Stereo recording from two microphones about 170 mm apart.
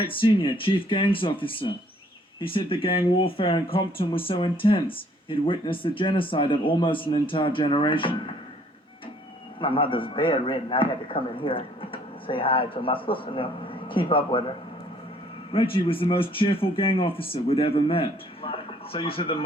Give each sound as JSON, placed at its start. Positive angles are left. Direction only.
{"t": 0.0, "sound": "a man's voice", "side_deg": 30}
{"t": 9.6, "sound": "a man's voice", "side_deg": 30}
{"t": 15.5, "sound": "a man's voice", "side_deg": 30}